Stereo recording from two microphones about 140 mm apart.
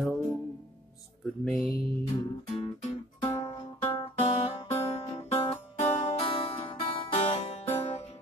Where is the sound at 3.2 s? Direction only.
30° left (ahead or behind).